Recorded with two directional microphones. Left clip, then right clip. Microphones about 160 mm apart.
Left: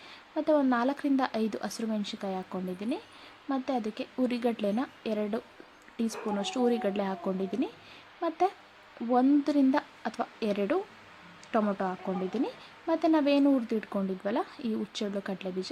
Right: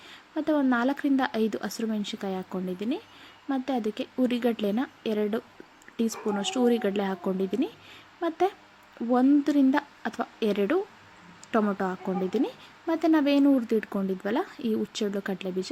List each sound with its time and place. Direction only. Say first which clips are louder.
0.3 s speech: right 1 dB; 5° right (ahead or behind)